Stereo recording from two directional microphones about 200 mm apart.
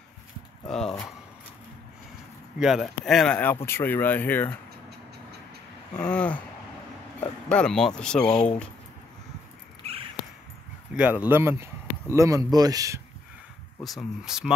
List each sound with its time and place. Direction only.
0.7 s speech: 5° left (ahead or behind)
2.6 s speech: centre (ahead or behind)
5.9 s speech: 5° left (ahead or behind)
8.3 s speech: 30° left (ahead or behind)
10.9 s speech: 5° right (ahead or behind)
13.8 s speech: centre (ahead or behind)